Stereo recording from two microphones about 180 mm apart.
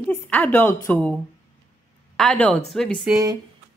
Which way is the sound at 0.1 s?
10° left (ahead or behind).